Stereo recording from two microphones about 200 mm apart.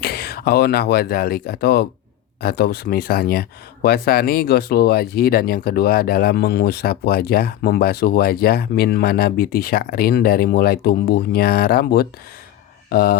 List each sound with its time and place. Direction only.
0.0 s speech: 50° left (ahead or behind)